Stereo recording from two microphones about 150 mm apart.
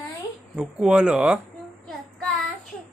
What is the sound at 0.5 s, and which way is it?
Speech, 5° right (ahead or behind).